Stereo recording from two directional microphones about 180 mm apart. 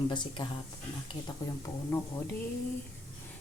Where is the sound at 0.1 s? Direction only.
25° left (ahead or behind).